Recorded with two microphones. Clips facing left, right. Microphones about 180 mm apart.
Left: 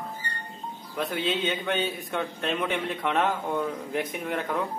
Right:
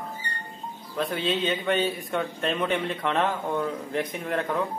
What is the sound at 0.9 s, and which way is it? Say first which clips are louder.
A man's voice: right 1 dB; centre (ahead or behind).